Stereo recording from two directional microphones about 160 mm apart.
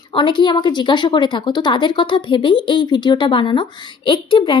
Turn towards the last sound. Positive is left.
turn(degrees=30)  # may be behind; listen again after turning